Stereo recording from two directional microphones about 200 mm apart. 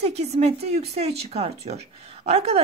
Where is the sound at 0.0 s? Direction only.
35° right (ahead or behind).